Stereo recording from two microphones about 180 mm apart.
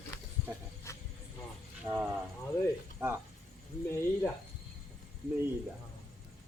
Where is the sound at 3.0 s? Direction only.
10° right (ahead or behind).